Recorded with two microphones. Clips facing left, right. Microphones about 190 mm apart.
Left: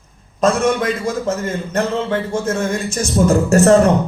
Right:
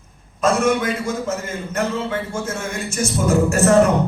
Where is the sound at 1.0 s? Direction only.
35° left (ahead or behind).